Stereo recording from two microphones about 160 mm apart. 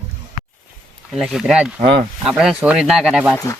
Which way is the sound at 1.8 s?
35° right (ahead or behind).